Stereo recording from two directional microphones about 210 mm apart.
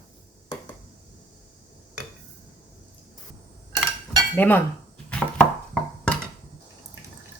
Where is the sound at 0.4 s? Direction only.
20° left (ahead or behind).